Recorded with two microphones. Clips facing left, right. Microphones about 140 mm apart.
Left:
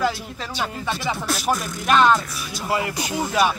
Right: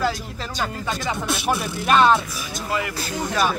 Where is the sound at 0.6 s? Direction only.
5° left (ahead or behind).